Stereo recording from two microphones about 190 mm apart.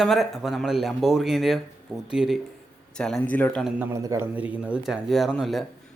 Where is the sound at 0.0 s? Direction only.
Centre (ahead or behind).